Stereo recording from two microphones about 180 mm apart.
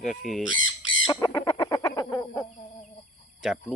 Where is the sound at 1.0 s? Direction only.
20° left (ahead or behind).